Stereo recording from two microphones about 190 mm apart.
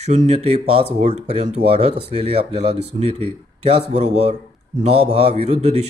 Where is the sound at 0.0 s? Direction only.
35° right (ahead or behind).